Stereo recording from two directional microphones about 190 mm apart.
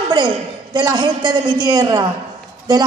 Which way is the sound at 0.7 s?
20° right (ahead or behind).